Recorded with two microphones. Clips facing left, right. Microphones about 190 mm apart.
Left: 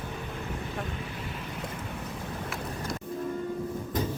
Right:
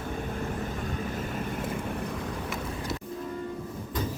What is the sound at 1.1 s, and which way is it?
Vehicle, 45° right (ahead or behind).